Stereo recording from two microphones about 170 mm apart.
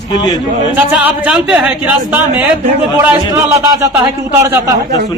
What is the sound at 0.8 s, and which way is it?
Speech, 10° right (ahead or behind).